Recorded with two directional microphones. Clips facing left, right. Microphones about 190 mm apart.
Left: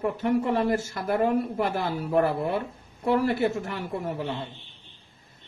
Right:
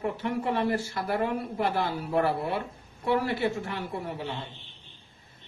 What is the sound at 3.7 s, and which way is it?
Speech, 45° left (ahead or behind).